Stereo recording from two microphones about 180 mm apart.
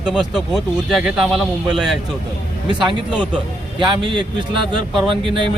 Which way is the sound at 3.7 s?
25° right (ahead or behind).